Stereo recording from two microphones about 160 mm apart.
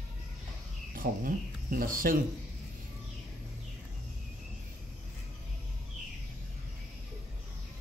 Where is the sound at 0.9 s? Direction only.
60° right (ahead or behind).